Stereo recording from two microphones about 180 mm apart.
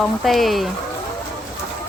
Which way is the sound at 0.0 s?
Centre (ahead or behind).